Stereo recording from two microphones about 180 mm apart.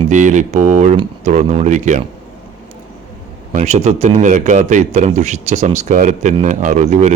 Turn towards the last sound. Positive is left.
turn(degrees=-40)  # may be behind; listen again after turning